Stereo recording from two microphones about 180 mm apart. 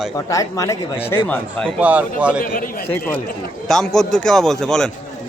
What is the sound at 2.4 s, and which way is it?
Speech, 50° left (ahead or behind).